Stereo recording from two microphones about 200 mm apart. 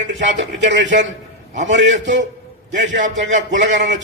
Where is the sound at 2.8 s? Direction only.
65° right (ahead or behind).